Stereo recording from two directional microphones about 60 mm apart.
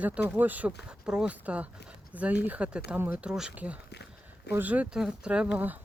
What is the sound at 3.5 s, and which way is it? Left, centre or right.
Speech, right.